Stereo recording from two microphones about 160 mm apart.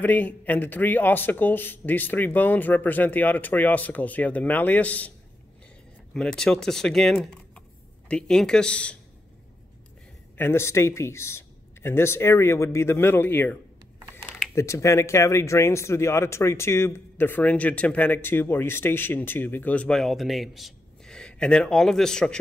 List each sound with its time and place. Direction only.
0.0 s speech: 10° left (ahead or behind)
6.1 s speech: 5° left (ahead or behind)
10.3 s speech: 15° left (ahead or behind)